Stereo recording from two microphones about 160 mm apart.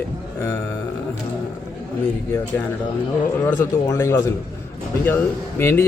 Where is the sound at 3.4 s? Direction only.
15° left (ahead or behind).